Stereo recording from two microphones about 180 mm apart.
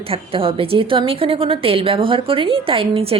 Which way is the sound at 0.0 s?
30° right (ahead or behind).